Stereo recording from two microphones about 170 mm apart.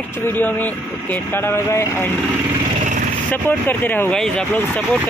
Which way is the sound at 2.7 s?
45° right (ahead or behind).